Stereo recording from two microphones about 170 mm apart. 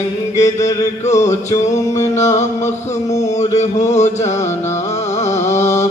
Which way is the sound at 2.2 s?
45° left (ahead or behind).